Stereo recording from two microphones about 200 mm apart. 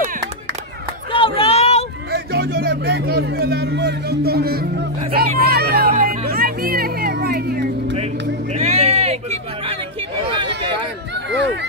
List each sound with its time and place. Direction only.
1.1 s run: 25° left (ahead or behind)
2.0 s speech: 50° right (ahead or behind)
5.9 s music: 45° right (ahead or behind)
8.5 s a sound: 30° right (ahead or behind)